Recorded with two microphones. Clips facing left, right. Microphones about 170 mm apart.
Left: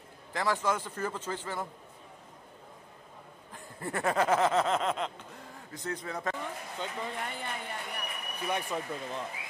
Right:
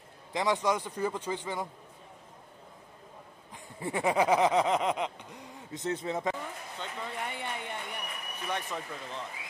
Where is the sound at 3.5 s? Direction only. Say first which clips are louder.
Right 2 dB; 10° right (ahead or behind).